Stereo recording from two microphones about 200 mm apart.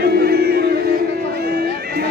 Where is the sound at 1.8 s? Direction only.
50° right (ahead or behind).